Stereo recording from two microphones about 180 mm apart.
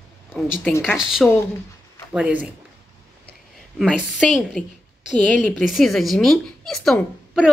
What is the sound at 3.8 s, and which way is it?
Speech, centre (ahead or behind).